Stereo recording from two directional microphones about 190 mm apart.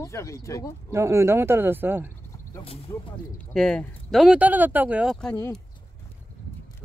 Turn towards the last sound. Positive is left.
turn(degrees=10)  # may be behind; listen again after turning